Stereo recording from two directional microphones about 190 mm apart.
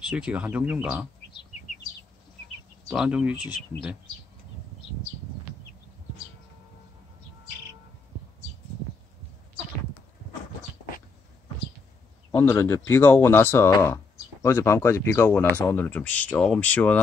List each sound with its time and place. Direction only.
0.0 s speech: 5° right (ahead or behind)
2.9 s speech: 5° right (ahead or behind)
12.3 s speech: 15° left (ahead or behind)